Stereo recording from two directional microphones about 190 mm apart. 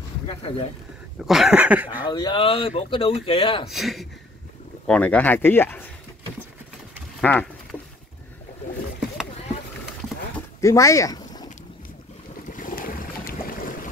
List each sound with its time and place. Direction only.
0.3 s speech: 30° left (ahead or behind)
1.2 s speech: centre (ahead or behind)
2.0 s speech: 20° left (ahead or behind)
3.6 s speech: centre (ahead or behind)
7.2 s speech: 10° left (ahead or behind)
10.6 s speech: 15° left (ahead or behind)
12.4 s boat: 45° left (ahead or behind)